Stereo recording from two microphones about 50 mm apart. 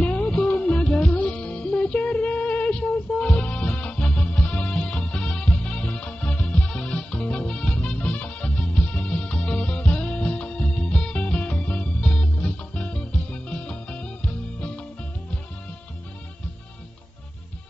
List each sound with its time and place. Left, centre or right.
0.0 s music: left